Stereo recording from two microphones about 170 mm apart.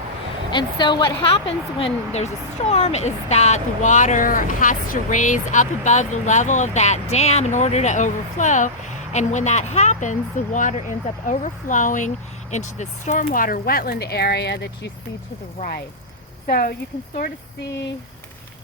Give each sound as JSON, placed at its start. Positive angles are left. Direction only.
{"t": 0.5, "sound": "speech", "side_deg": 25}
{"t": 16.5, "sound": "speech", "side_deg": 60}